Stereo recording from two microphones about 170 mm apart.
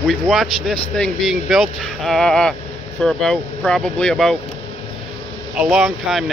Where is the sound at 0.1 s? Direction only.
Centre (ahead or behind).